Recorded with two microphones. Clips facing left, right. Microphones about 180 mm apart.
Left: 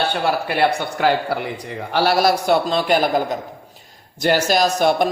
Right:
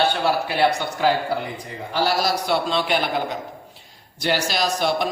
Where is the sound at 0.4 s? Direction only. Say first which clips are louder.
Left 2 dB; 55° left (ahead or behind).